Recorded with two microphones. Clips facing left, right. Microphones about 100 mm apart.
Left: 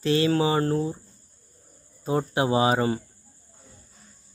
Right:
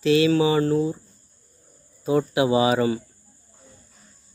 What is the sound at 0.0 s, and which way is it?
Speech, 35° left (ahead or behind).